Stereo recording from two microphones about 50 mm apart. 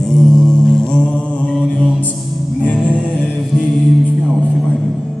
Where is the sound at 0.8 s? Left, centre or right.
Centre.